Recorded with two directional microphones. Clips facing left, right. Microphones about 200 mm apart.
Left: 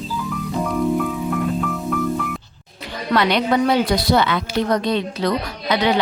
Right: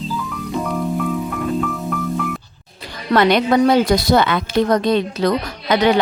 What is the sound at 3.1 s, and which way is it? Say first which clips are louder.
A woman's voice: right 4 dB; 45° right (ahead or behind).